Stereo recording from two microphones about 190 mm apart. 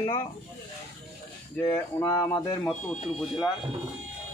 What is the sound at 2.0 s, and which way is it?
Speech, 15° left (ahead or behind).